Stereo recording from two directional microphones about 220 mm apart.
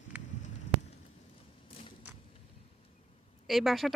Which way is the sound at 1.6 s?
25° left (ahead or behind).